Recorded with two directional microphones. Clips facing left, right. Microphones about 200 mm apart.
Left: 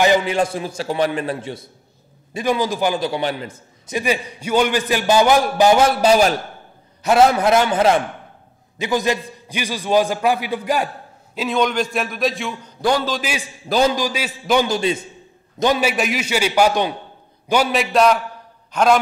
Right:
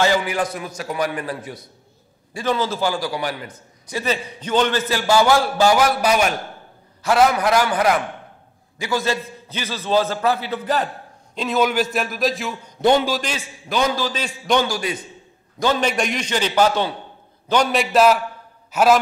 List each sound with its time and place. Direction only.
0.0 s a man's voice: 20° left (ahead or behind)
2.3 s a man's voice: 15° left (ahead or behind)
4.0 s a man's voice: 10° left (ahead or behind)
11.3 s a man's voice: centre (ahead or behind)
13.7 s a man's voice: 35° left (ahead or behind)
13.9 s a man's voice: 10° left (ahead or behind)
14.7 s a man's voice: 25° left (ahead or behind)
15.6 s a man's voice: 10° left (ahead or behind); by 18.9 s 5° right (ahead or behind)